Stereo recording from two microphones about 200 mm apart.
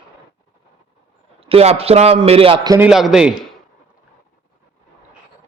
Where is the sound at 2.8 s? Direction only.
5° right (ahead or behind).